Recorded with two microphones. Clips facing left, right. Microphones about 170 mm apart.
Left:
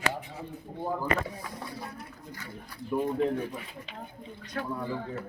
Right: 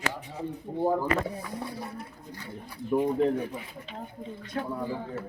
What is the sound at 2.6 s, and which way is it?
Speech, 10° right (ahead or behind).